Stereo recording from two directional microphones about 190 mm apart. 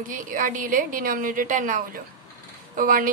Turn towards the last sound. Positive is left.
turn(degrees=-45)  # may be behind; listen again after turning